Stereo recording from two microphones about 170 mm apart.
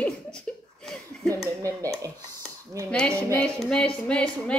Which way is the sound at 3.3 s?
5° left (ahead or behind).